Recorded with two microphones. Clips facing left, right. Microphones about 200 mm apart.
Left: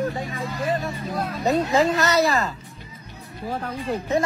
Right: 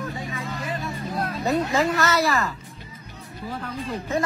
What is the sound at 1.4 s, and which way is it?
Speech, 20° left (ahead or behind).